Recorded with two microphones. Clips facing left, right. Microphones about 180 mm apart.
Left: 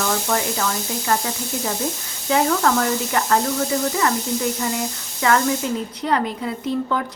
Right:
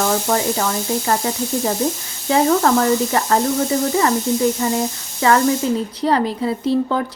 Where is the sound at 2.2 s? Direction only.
30° right (ahead or behind).